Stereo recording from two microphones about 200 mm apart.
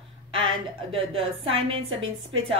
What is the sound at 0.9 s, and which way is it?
A woman's voice, 25° right (ahead or behind).